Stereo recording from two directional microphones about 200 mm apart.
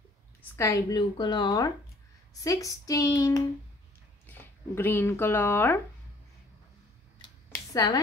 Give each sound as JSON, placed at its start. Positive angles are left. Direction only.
{"t": 0.4, "sound": "a woman's voice", "side_deg": 15}
{"t": 7.7, "sound": "speech", "side_deg": 20}